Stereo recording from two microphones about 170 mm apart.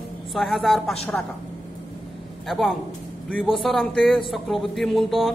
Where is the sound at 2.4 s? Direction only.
Centre (ahead or behind).